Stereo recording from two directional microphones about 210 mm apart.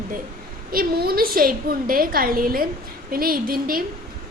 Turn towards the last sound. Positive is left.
turn(degrees=-45)  # may be behind; listen again after turning